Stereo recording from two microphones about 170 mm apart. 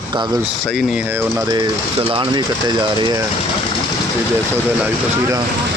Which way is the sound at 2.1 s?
30° right (ahead or behind).